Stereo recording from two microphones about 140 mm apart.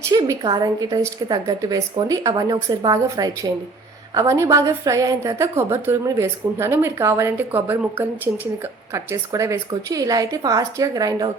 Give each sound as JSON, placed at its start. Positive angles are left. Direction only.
{"t": 0.1, "sound": "a woman's voice", "side_deg": -30}